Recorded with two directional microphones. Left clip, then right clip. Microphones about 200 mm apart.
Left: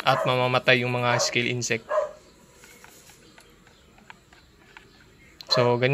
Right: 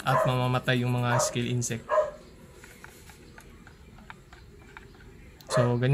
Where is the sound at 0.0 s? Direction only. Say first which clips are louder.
Left 4 dB; 15° left (ahead or behind).